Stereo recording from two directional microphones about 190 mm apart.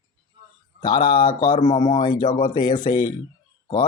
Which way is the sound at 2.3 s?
40° left (ahead or behind).